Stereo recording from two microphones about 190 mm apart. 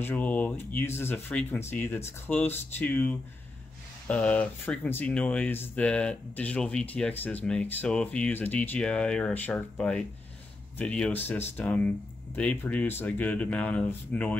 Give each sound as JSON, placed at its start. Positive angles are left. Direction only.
{"t": 0.0, "sound": "speech", "side_deg": 5}